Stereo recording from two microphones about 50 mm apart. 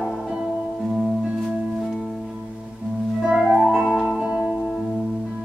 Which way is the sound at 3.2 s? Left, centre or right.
Centre.